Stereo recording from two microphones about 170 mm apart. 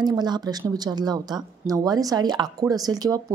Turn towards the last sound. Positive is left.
turn(degrees=-20)  # may be behind; listen again after turning